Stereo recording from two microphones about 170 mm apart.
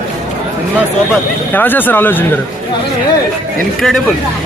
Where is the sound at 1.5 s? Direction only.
10° left (ahead or behind).